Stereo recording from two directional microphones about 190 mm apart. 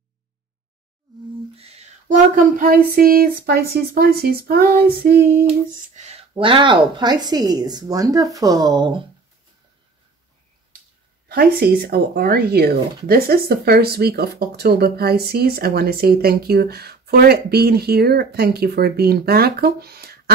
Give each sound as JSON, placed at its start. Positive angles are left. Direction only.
{"t": 1.6, "sound": "a sound", "side_deg": -35}
{"t": 2.9, "sound": "speech", "side_deg": -50}
{"t": 5.8, "sound": "speech", "side_deg": -35}
{"t": 11.2, "sound": "speech", "side_deg": -55}